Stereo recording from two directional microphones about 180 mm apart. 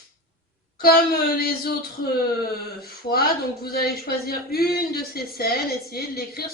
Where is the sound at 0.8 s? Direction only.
55° left (ahead or behind).